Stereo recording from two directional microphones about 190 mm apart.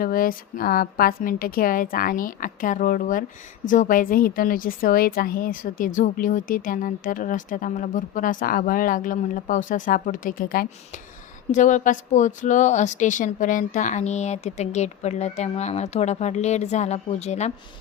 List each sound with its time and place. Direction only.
0.0 s a woman's voice: 50° left (ahead or behind)